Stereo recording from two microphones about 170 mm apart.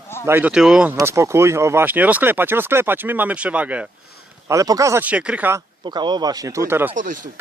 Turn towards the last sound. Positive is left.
turn(degrees=-50)  # may be behind; listen again after turning